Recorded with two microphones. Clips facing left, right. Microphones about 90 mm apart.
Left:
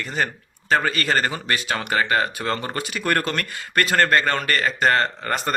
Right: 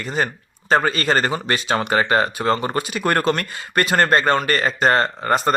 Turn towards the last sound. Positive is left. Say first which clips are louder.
# right 6 dB
turn(degrees=-25)  # may be behind; listen again after turning